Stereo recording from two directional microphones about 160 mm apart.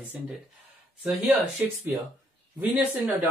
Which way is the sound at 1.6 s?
10° right (ahead or behind).